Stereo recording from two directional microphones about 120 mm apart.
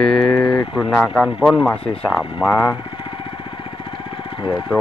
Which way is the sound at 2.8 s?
45° left (ahead or behind).